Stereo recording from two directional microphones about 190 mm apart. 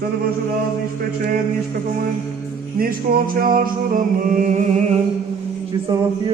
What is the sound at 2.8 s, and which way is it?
Music, 50° right (ahead or behind).